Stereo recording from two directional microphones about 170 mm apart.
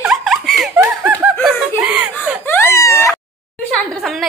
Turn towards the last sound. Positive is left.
turn(degrees=0)  # may be behind; listen again after turning